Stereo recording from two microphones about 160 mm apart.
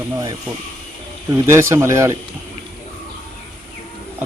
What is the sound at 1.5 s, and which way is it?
Speech, 15° right (ahead or behind).